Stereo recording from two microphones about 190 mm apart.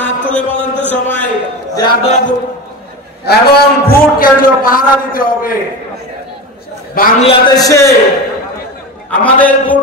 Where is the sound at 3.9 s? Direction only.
50° left (ahead or behind).